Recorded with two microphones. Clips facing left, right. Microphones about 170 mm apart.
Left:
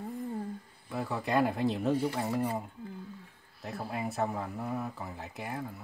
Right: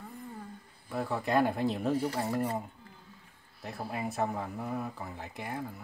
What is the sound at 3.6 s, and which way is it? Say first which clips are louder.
Speech: even; centre (ahead or behind).